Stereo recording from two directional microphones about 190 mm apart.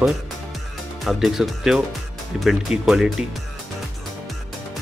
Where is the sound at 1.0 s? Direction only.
Centre (ahead or behind).